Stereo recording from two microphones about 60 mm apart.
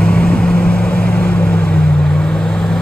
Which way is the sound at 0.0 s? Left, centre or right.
Left.